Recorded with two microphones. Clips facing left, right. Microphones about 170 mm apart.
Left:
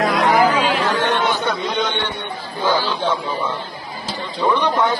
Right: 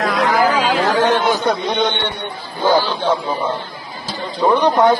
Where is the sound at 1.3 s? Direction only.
40° right (ahead or behind).